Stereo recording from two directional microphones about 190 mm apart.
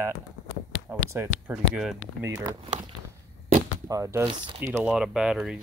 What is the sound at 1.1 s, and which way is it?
Speech, 10° right (ahead or behind).